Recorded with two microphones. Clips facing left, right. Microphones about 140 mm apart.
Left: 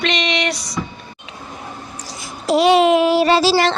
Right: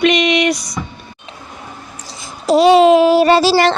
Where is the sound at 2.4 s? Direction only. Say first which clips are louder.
Right 4 dB; 35° right (ahead or behind); by 3.7 s 55° right (ahead or behind).